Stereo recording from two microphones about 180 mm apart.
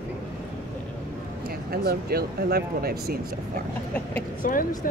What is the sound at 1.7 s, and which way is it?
Speech, 60° right (ahead or behind).